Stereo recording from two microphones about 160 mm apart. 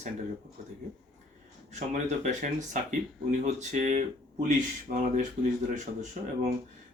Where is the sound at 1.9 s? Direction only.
50° right (ahead or behind).